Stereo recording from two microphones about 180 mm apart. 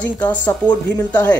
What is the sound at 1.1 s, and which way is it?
Speech, 10° left (ahead or behind).